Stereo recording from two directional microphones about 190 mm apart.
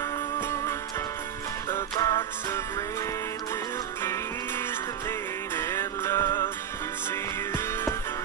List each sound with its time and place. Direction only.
0.4 s music: 15° left (ahead or behind)
5.6 s music: 15° left (ahead or behind)